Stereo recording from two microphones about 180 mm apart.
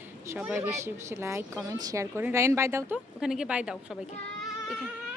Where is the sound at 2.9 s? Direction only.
5° right (ahead or behind).